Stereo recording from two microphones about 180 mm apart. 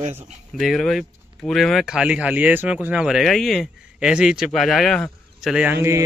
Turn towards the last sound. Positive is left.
turn(degrees=-15)  # may be behind; listen again after turning